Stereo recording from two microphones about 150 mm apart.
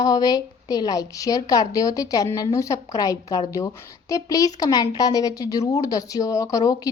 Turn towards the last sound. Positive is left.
turn(degrees=25)  # may be behind; listen again after turning